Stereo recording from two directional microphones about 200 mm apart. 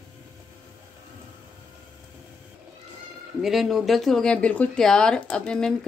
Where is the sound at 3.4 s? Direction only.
Centre (ahead or behind).